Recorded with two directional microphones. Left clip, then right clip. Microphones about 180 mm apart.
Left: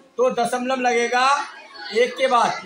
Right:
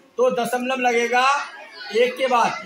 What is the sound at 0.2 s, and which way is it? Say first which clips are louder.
A man's voice: even; 20° right (ahead or behind).